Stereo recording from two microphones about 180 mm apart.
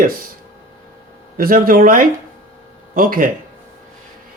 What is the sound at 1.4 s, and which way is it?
Speech, 50° right (ahead or behind).